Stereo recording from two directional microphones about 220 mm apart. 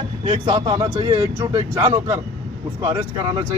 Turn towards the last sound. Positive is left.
turn(degrees=-15)  # may be behind; listen again after turning